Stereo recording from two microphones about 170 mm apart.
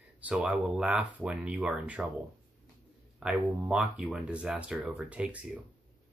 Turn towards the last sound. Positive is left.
turn(degrees=-5)  # may be behind; listen again after turning